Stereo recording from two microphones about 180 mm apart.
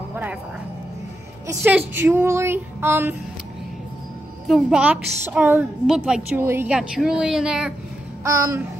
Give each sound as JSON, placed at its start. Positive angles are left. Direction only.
{"t": 0.1, "sound": "music", "side_deg": -10}
{"t": 1.5, "sound": "speech", "side_deg": -10}
{"t": 4.5, "sound": "a woman's voice", "side_deg": 0}
{"t": 8.2, "sound": "babbling", "side_deg": -20}